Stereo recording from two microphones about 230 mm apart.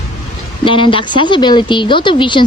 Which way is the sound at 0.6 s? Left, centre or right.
Left.